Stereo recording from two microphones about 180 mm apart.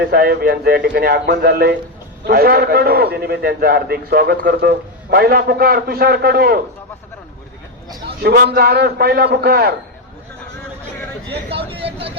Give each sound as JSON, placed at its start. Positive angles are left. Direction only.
{"t": 0.0, "sound": "a man's voice", "side_deg": -60}
{"t": 8.0, "sound": "a man's voice", "side_deg": -60}
{"t": 11.5, "sound": "speech", "side_deg": -30}